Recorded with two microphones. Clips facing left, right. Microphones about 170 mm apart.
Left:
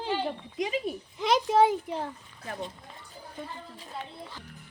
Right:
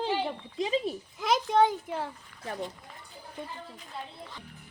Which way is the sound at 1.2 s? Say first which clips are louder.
Left 2 dB; centre (ahead or behind).